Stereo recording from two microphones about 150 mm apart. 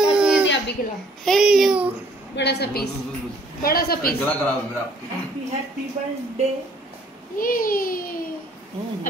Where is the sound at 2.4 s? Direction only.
90° left.